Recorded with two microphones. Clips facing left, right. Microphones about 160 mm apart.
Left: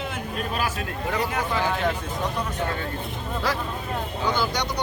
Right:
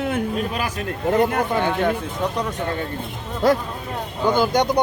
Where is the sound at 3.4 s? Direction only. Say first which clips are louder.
Right 11 dB; 50° right (ahead or behind).